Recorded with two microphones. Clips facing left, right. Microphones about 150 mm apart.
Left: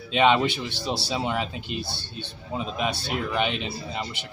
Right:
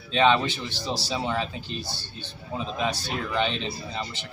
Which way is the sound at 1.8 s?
60° left (ahead or behind).